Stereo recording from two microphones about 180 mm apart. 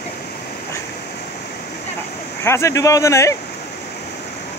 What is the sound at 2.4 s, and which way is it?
Speech, 15° left (ahead or behind).